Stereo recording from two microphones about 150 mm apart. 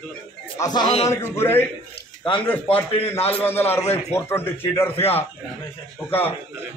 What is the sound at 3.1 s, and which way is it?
Speech, 40° left (ahead or behind).